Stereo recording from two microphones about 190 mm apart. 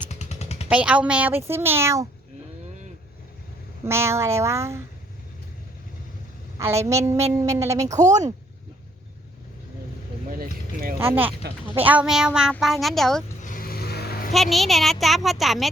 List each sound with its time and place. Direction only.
0.1 s a sound: 35° left (ahead or behind)
0.7 s speech: 5° right (ahead or behind)
3.8 s speech: 15° right (ahead or behind)
6.6 s speech: 15° right (ahead or behind)
7.9 s speech: 40° right (ahead or behind)
10.3 s a sound: 50° right (ahead or behind)
10.9 s speech: 10° right (ahead or behind)
13.4 s vehicle: 45° left (ahead or behind)
14.3 s speech: centre (ahead or behind)